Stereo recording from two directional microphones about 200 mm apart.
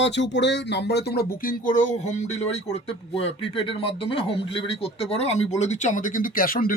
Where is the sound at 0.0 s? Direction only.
60° left (ahead or behind).